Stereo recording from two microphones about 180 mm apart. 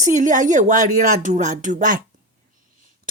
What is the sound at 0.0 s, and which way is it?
A woman's voice, 45° right (ahead or behind).